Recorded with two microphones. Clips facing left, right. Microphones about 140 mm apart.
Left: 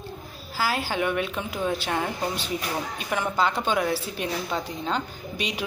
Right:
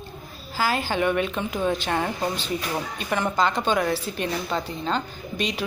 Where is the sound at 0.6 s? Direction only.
5° left (ahead or behind).